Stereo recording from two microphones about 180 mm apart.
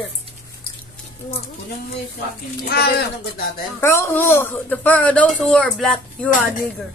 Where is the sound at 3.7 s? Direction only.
15° left (ahead or behind).